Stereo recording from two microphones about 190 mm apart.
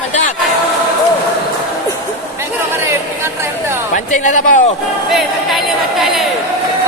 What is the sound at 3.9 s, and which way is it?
Speech, 40° left (ahead or behind).